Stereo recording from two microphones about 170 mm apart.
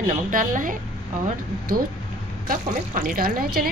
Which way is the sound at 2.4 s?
55° right (ahead or behind).